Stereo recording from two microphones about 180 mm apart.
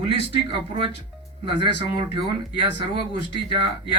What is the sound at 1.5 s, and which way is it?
Speech, 25° right (ahead or behind).